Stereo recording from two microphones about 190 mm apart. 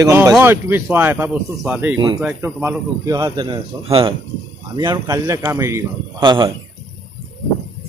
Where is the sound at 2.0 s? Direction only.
25° right (ahead or behind).